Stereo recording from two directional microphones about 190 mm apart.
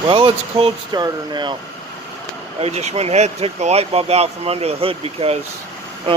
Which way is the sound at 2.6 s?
35° right (ahead or behind).